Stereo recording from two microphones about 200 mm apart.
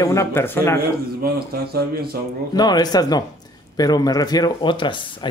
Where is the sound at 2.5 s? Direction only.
20° left (ahead or behind).